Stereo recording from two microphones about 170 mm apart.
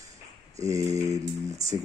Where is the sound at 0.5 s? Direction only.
20° right (ahead or behind).